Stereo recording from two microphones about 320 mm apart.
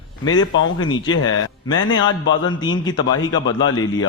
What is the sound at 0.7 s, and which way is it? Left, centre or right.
Speech, centre.